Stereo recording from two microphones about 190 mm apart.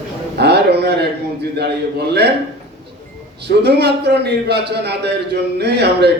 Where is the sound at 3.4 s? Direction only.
60° right (ahead or behind).